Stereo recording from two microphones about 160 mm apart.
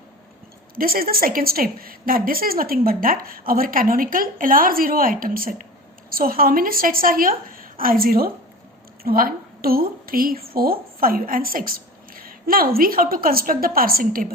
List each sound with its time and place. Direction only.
0.8 s a woman's voice: 65° right (ahead or behind)